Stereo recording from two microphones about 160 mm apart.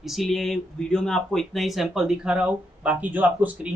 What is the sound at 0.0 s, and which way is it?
Speech, centre (ahead or behind).